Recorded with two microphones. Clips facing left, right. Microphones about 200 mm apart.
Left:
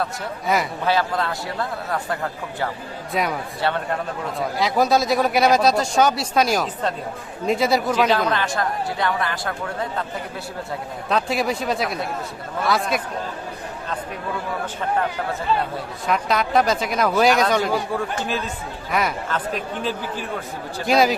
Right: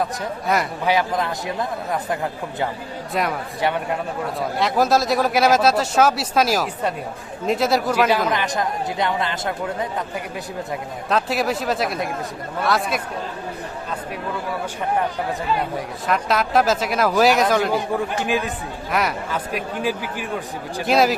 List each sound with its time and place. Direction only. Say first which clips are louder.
0.4 s speech: even; centre (ahead or behind)
0.9 s speech: right 1 dB; 15° right (ahead or behind)
3.1 s speech: even; centre (ahead or behind)
3.6 s speech: right 1 dB; 15° right (ahead or behind)
4.4 s speech: even; centre (ahead or behind)
8.3 s speech: even; 15° right (ahead or behind)
11.1 s speech: right 1 dB; centre (ahead or behind)
16.0 s speech: even; centre (ahead or behind)
18.2 s speech: right 3 dB; 15° right (ahead or behind)
18.9 s speech: even; centre (ahead or behind)
20.8 s speech: even; centre (ahead or behind)